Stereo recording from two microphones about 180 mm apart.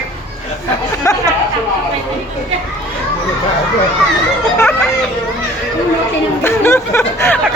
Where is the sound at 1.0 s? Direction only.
15° left (ahead or behind).